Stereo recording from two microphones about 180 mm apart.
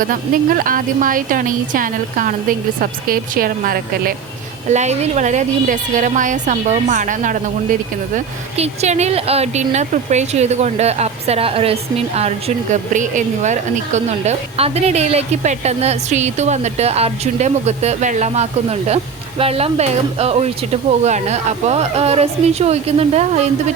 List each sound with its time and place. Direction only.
0.0 s a woman's voice: 50° right (ahead or behind)
4.7 s a woman's voice: 40° right (ahead or behind)